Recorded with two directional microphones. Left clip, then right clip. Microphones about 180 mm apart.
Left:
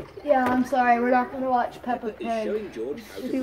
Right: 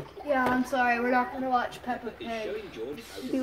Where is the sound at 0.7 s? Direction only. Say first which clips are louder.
Left 7 dB; 30° left (ahead or behind).